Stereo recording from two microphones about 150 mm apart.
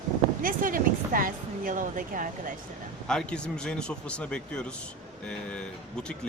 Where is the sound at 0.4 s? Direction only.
65° right (ahead or behind).